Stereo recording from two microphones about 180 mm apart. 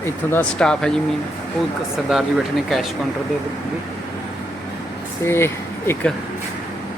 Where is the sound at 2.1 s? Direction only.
5° right (ahead or behind).